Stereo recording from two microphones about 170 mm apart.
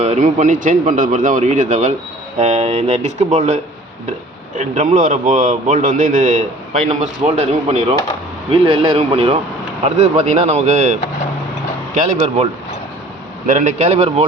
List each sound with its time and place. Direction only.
0.0 s speech: 45° right (ahead or behind)
11.9 s speech: 45° right (ahead or behind)
13.5 s speech: 45° right (ahead or behind)